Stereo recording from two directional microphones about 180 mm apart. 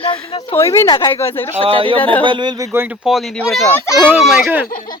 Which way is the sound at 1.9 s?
10° left (ahead or behind).